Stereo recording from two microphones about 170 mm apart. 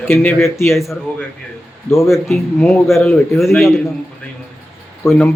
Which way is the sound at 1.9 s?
10° left (ahead or behind).